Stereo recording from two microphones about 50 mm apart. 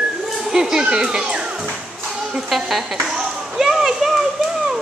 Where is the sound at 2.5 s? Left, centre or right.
Centre.